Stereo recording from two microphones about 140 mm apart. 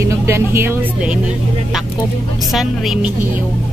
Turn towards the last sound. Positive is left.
turn(degrees=0)  # may be behind; listen again after turning